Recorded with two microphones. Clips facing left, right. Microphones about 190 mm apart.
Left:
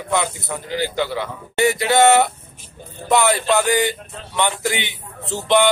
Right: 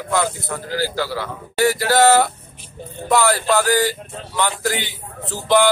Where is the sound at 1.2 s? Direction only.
20° left (ahead or behind).